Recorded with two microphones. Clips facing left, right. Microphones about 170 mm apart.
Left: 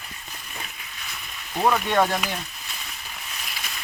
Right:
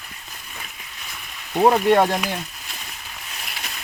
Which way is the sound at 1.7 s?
35° right (ahead or behind).